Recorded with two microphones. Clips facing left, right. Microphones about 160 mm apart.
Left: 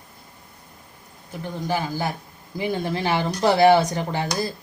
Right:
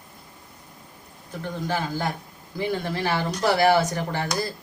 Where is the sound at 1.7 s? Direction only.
10° left (ahead or behind).